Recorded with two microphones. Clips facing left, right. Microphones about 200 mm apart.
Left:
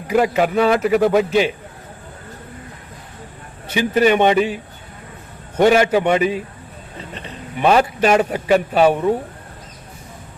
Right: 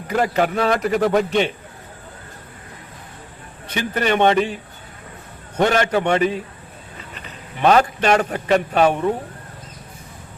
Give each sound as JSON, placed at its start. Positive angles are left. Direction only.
{"t": 0.1, "sound": "a man's voice", "side_deg": 5}
{"t": 3.7, "sound": "a man's voice", "side_deg": 10}
{"t": 5.5, "sound": "a man's voice", "side_deg": 10}
{"t": 6.9, "sound": "a sound", "side_deg": 30}
{"t": 7.6, "sound": "a man's voice", "side_deg": 5}